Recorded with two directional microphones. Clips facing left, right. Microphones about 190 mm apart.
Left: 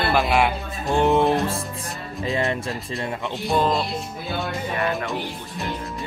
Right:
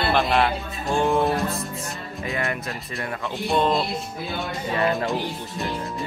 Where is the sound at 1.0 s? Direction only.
20° left (ahead or behind).